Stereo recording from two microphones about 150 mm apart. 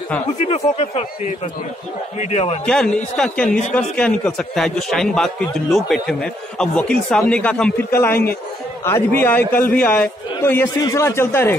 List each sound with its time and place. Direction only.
0.5 s speech: 45° left (ahead or behind)
2.6 s a man's voice: 5° left (ahead or behind)